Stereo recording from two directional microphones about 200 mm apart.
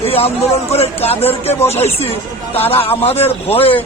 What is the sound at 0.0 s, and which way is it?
A man's voice, 30° left (ahead or behind).